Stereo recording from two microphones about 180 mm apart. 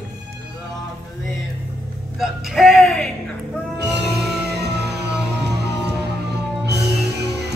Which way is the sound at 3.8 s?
70° right (ahead or behind).